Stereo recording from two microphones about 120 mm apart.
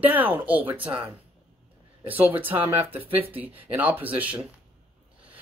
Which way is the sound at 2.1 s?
15° right (ahead or behind).